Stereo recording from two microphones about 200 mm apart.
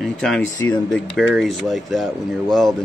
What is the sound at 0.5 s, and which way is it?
Speech, 20° left (ahead or behind).